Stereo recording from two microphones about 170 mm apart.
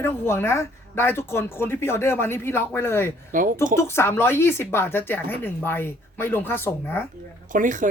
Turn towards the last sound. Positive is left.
turn(degrees=-50)  # may be behind; listen again after turning